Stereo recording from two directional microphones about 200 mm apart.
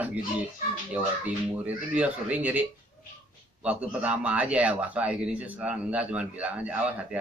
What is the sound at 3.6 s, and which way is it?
A man's voice, 5° right (ahead or behind).